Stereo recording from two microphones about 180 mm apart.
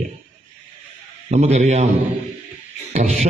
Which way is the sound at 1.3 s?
35° right (ahead or behind).